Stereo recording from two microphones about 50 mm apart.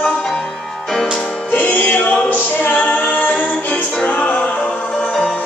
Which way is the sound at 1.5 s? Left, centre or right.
Left.